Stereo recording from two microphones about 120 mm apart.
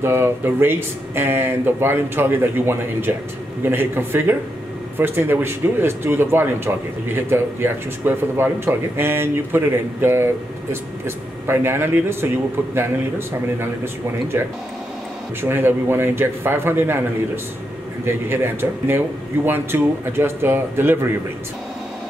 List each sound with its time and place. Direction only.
0.0 s speech: 20° right (ahead or behind)
15.4 s speech: 20° right (ahead or behind)
18.0 s speech: 20° right (ahead or behind)